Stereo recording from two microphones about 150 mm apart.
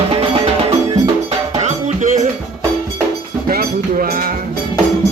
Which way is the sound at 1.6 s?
50° right (ahead or behind).